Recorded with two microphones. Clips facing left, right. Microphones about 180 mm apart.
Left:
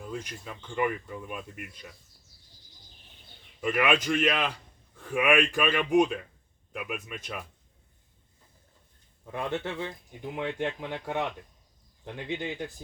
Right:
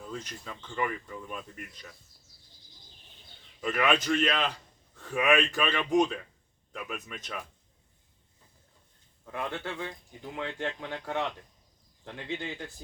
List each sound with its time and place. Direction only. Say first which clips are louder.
0.0 s speech: left 2 dB; 10° left (ahead or behind)
3.6 s speech: left 1 dB; 10° left (ahead or behind)
9.2 s speech: left 3 dB; 20° left (ahead or behind)